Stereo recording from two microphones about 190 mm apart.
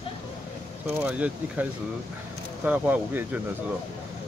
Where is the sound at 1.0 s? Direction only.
5° right (ahead or behind).